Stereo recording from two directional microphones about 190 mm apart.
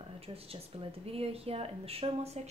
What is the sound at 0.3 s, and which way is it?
A woman's voice, 30° right (ahead or behind).